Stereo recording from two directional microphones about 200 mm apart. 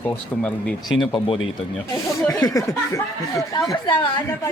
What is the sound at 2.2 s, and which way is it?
Speech, 20° left (ahead or behind).